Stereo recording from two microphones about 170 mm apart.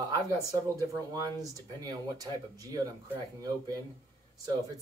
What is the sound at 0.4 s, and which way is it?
Speech, 20° right (ahead or behind).